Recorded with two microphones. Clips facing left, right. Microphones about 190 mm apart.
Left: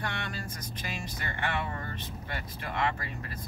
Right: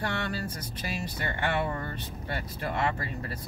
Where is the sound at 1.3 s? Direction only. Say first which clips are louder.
Right 4 dB; 40° right (ahead or behind).